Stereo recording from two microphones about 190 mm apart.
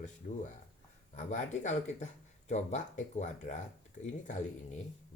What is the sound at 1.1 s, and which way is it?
Speech, 40° left (ahead or behind).